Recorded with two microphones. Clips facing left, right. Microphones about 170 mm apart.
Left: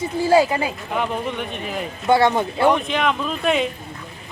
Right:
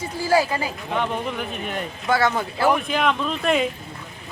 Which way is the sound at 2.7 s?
5° right (ahead or behind).